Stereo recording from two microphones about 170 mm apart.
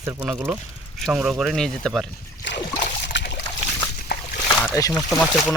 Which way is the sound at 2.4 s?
90° left.